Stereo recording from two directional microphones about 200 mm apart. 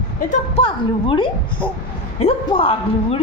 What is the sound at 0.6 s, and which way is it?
A woman's voice, 25° left (ahead or behind).